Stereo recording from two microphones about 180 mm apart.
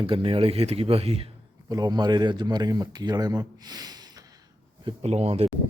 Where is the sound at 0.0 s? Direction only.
30° right (ahead or behind).